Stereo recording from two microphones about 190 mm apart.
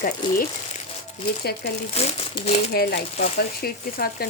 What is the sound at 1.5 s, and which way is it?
Speech, 55° left (ahead or behind).